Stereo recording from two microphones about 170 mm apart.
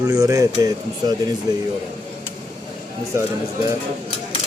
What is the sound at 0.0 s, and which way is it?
Speech, 20° right (ahead or behind).